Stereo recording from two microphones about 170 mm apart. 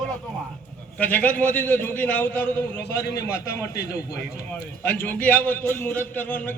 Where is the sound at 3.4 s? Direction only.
20° left (ahead or behind).